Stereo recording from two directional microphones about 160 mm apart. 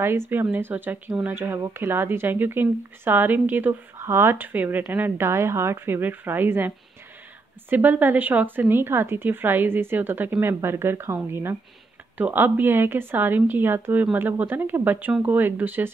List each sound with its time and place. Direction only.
0.0 s speech: 15° right (ahead or behind)
7.7 s speech: 10° right (ahead or behind)